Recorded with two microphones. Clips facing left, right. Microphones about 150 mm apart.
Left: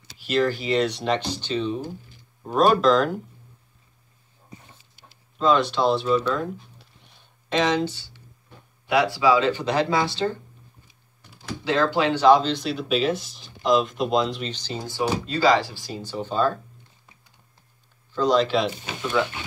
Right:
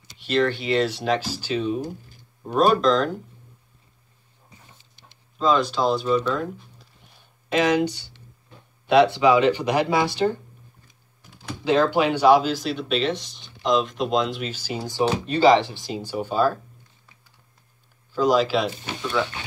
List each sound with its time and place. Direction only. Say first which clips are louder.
0.2 s speech: right 1 dB; centre (ahead or behind)
5.4 s speech: left 1 dB; centre (ahead or behind); by 10.4 s 15° right (ahead or behind)
11.6 s speech: right 2 dB; 15° right (ahead or behind)
18.1 s speech: right 1 dB; 5° right (ahead or behind)